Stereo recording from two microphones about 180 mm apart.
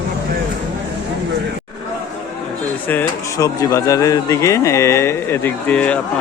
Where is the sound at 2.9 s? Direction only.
15° left (ahead or behind).